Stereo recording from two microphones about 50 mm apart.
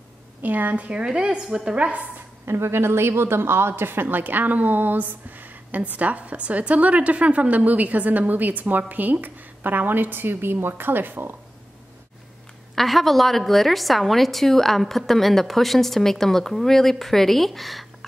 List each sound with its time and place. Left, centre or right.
0.4 s a woman's voice: right
1.0 s a woman's voice: centre
2.4 s a woman's voice: right
12.7 s a woman's voice: centre